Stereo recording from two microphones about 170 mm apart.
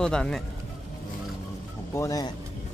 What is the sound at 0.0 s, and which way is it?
Speech, 5° left (ahead or behind).